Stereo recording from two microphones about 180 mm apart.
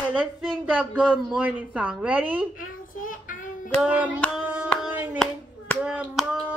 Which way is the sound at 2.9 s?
50° left (ahead or behind).